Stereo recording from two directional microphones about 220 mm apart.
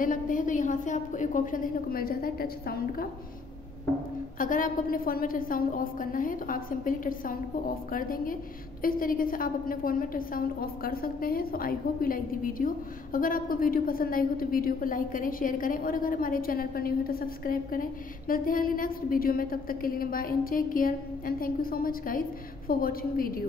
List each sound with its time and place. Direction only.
0.0 s a woman's voice: 40° left (ahead or behind)
4.4 s a woman's voice: 40° left (ahead or behind)